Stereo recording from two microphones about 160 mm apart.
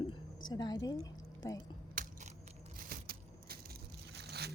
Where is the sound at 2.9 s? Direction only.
70° right (ahead or behind).